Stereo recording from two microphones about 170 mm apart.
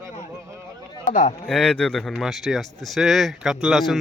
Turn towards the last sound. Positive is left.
turn(degrees=0)  # may be behind; listen again after turning